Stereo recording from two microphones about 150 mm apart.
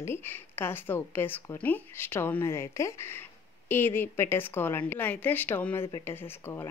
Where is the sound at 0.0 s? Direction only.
15° left (ahead or behind).